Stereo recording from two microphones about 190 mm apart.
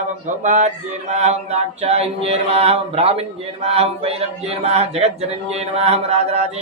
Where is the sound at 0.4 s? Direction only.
40° right (ahead or behind).